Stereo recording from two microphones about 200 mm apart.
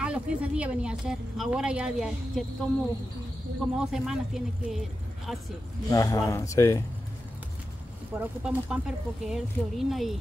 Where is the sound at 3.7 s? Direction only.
5° right (ahead or behind).